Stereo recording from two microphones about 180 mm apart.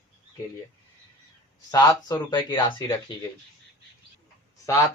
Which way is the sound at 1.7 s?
20° left (ahead or behind).